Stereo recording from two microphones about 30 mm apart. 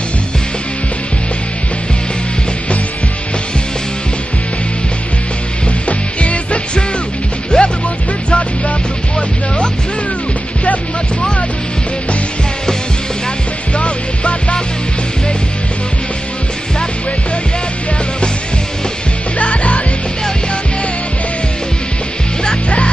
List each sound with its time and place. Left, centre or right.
5.9 s music: left
7.5 s music: left
8.3 s music: left
13.7 s music: left
19.3 s music: left